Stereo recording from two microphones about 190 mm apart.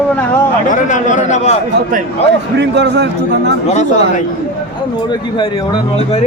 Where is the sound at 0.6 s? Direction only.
40° left (ahead or behind).